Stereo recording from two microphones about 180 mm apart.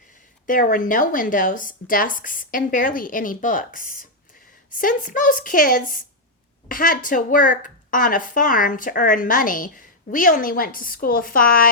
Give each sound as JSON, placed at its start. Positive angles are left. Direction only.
{"t": 0.4, "sound": "a woman's voice", "side_deg": 50}